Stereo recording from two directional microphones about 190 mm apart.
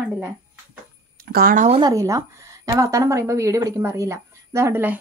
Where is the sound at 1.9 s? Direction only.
15° right (ahead or behind).